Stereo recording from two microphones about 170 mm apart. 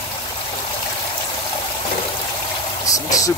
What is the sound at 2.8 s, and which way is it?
Vehicle, 20° left (ahead or behind).